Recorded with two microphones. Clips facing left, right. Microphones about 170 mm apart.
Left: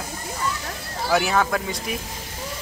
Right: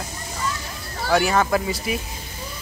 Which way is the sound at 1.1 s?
Centre (ahead or behind).